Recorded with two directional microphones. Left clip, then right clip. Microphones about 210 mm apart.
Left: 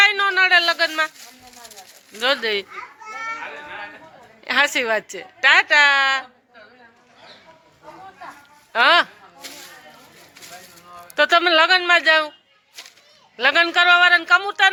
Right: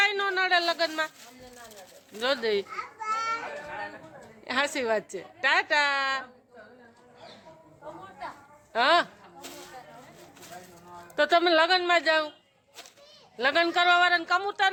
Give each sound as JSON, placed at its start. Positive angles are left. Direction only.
{"t": 0.0, "sound": "a sound", "side_deg": 0}
{"t": 2.2, "sound": "a woman's voice", "side_deg": 0}
{"t": 4.4, "sound": "a woman's voice", "side_deg": 0}
{"t": 8.7, "sound": "speech", "side_deg": 0}
{"t": 11.1, "sound": "a woman's voice", "side_deg": 0}
{"t": 13.3, "sound": "a woman's voice", "side_deg": 0}